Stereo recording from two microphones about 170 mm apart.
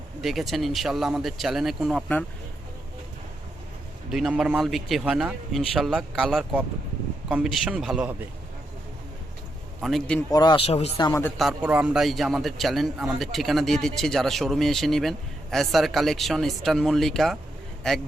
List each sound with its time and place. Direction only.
0.2 s a man's voice: centre (ahead or behind)
4.1 s a man's voice: centre (ahead or behind)
9.8 s a man's voice: centre (ahead or behind)
10.2 s speech: 20° left (ahead or behind)
10.7 s speech: 40° left (ahead or behind)
10.9 s speech: 20° left (ahead or behind)
11.3 s a man's voice: 5° right (ahead or behind)